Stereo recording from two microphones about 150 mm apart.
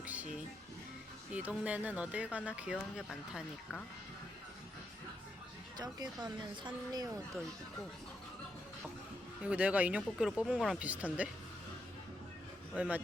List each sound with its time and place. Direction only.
0.0 s music: 10° right (ahead or behind)
1.3 s speech: 10° right (ahead or behind)
5.7 s speech: 25° right (ahead or behind)
9.4 s speech: 10° right (ahead or behind)
12.7 s speech: 10° right (ahead or behind)